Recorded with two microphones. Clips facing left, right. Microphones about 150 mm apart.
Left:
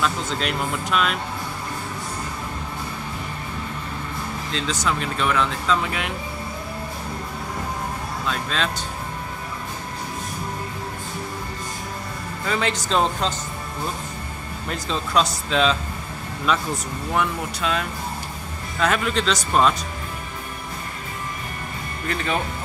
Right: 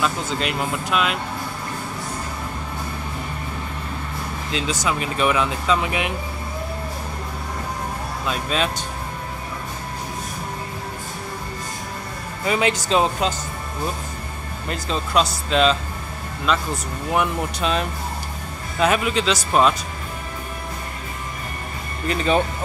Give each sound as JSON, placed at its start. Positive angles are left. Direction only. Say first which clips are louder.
{"t": 0.0, "sound": "speech", "louder": "right 1 dB", "side_deg": -5}
{"t": 4.5, "sound": "speech", "louder": "right 2 dB", "side_deg": -10}
{"t": 8.3, "sound": "speech", "louder": "right 3 dB", "side_deg": -15}
{"t": 12.4, "sound": "speech", "louder": "right 4 dB", "side_deg": -10}
{"t": 14.7, "sound": "speech", "louder": "right 1 dB", "side_deg": 0}
{"t": 17.1, "sound": "speech", "louder": "right 2 dB", "side_deg": -20}
{"t": 22.1, "sound": "speech", "louder": "right 5 dB", "side_deg": -20}